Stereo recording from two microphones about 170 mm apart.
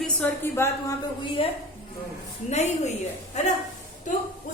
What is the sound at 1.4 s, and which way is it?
A woman's voice, 35° left (ahead or behind).